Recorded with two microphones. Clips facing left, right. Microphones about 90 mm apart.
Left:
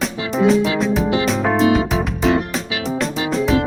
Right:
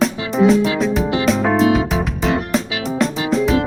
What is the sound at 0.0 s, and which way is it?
Music, centre (ahead or behind).